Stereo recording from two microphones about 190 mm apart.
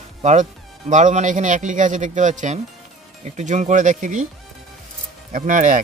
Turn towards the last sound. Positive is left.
turn(degrees=-40)  # may be behind; listen again after turning